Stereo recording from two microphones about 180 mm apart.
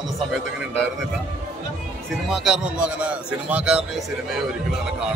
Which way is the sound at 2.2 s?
5° right (ahead or behind).